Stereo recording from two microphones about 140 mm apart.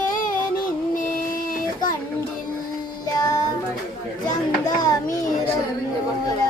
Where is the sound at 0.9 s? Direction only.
75° left (ahead or behind).